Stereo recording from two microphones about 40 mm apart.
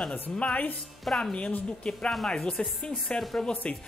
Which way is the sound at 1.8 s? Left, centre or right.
Left.